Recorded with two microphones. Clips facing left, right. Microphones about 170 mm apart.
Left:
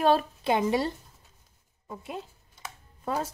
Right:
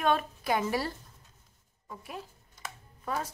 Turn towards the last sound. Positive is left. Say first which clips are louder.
# left 4 dB
turn(degrees=25)  # may be behind; listen again after turning